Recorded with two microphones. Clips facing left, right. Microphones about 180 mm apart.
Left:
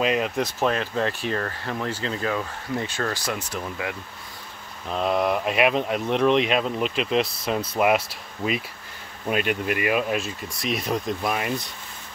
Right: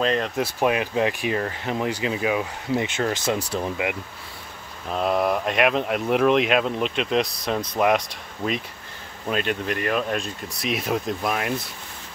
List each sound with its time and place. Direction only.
0.0 s speech: 10° left (ahead or behind)
0.4 s speech: 10° right (ahead or behind); by 3.7 s 30° right (ahead or behind)
4.8 s speech: centre (ahead or behind)